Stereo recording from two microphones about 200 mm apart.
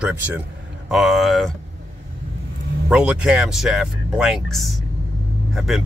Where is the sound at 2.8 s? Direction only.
5° right (ahead or behind).